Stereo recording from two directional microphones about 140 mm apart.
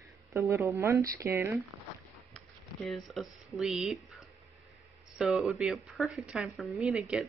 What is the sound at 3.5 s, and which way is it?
Speech, centre (ahead or behind).